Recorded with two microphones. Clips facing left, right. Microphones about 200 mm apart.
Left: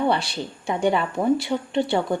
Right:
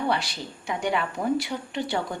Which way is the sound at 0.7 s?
30° left (ahead or behind).